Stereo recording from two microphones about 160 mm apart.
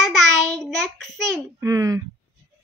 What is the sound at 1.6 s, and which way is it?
Speech, 20° right (ahead or behind).